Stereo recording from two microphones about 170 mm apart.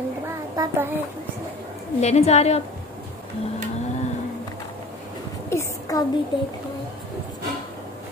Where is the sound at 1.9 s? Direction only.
40° left (ahead or behind).